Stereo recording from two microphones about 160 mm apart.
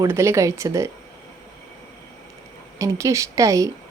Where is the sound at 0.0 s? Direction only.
15° right (ahead or behind).